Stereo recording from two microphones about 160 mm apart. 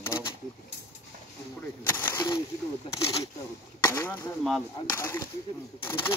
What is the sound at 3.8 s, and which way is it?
Speech, 20° left (ahead or behind).